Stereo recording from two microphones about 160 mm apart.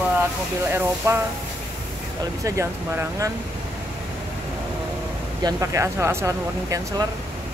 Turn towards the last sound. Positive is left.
turn(degrees=-20)  # may be behind; listen again after turning